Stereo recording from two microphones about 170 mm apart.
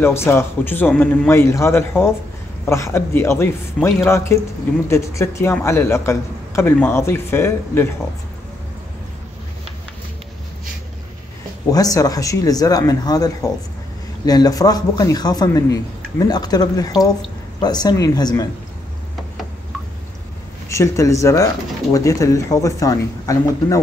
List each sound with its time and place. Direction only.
0.0 s a man's voice: 15° left (ahead or behind)
11.7 s speech: 20° left (ahead or behind)
20.6 s a man's voice: 15° left (ahead or behind)